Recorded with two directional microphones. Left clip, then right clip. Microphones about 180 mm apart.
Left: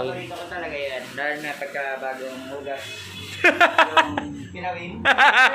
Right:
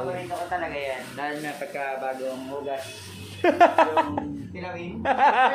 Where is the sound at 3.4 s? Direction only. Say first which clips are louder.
Left 2 dB; 20° right (ahead or behind).